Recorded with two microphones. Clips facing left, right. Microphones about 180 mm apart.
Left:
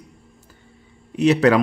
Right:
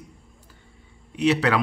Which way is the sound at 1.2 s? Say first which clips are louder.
Left 6 dB; 45° left (ahead or behind).